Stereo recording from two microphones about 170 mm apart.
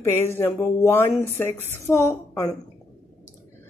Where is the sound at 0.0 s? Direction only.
15° left (ahead or behind).